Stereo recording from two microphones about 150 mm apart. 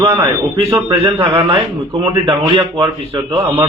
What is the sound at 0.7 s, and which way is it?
Speech, 25° right (ahead or behind).